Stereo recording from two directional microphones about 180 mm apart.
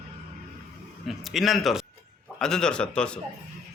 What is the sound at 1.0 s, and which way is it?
Speech, centre (ahead or behind).